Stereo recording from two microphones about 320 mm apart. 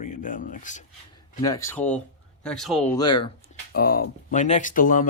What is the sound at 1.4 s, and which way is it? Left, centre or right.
Speech, centre.